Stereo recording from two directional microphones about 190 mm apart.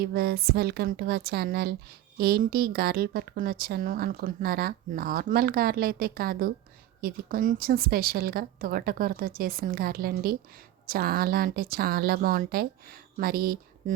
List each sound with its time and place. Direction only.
0.0 s a woman's voice: 55° right (ahead or behind)